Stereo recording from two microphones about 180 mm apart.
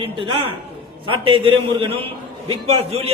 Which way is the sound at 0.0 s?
30° right (ahead or behind).